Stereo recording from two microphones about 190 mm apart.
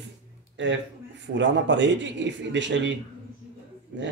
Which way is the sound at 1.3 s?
70° right (ahead or behind).